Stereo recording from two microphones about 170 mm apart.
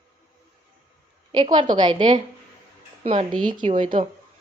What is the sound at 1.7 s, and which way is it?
Speech, 25° right (ahead or behind).